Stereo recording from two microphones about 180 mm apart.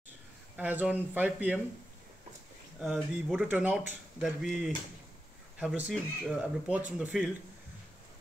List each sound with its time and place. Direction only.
0.6 s speech: 10° right (ahead or behind)
2.8 s speech: centre (ahead or behind)
5.9 s speech: 5° right (ahead or behind)